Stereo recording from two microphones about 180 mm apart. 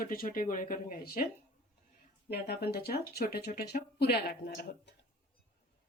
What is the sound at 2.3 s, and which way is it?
Speech, 60° left (ahead or behind).